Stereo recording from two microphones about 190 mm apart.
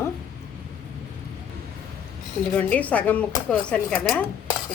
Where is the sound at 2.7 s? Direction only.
10° left (ahead or behind).